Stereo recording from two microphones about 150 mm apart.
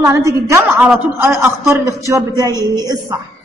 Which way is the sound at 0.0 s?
20° right (ahead or behind).